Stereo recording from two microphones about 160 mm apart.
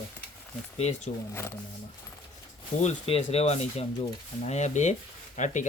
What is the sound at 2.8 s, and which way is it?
Speech, 40° left (ahead or behind).